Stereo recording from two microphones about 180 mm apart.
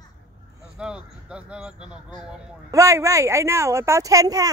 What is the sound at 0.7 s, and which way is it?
Speech, 5° right (ahead or behind).